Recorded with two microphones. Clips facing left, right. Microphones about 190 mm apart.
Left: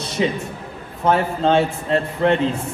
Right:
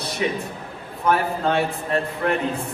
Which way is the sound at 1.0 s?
25° left (ahead or behind).